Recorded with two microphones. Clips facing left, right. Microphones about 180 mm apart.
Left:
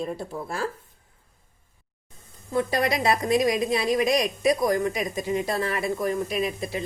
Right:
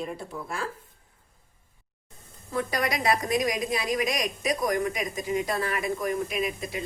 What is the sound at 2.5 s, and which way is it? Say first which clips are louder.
A woman's voice: left 4 dB; 30° left (ahead or behind).